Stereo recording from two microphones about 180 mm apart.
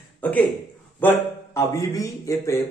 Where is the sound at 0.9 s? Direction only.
10° left (ahead or behind).